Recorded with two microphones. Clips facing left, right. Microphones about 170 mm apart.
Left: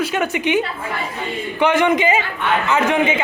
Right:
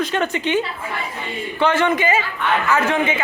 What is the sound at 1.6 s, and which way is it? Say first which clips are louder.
A woman's voice: left 2 dB; 15° left (ahead or behind).